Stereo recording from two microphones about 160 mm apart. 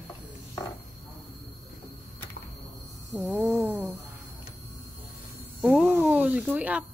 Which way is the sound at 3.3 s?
10° right (ahead or behind).